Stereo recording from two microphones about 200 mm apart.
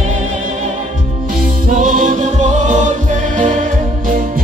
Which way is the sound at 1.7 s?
40° right (ahead or behind).